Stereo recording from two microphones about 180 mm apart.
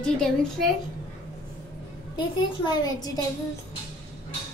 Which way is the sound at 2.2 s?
25° left (ahead or behind).